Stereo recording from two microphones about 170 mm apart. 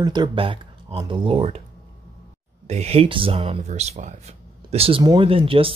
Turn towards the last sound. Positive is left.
turn(degrees=-35)  # may be behind; listen again after turning